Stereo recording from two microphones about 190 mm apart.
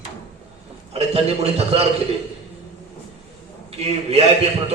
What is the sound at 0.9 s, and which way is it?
Speech, 30° right (ahead or behind).